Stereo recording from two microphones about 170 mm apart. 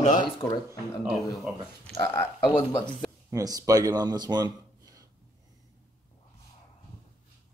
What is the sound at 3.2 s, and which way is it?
Speech, 20° right (ahead or behind).